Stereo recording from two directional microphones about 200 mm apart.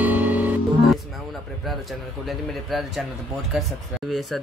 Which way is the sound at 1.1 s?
Centre (ahead or behind).